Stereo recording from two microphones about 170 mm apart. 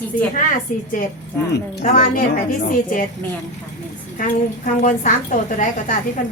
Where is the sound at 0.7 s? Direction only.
55° left (ahead or behind).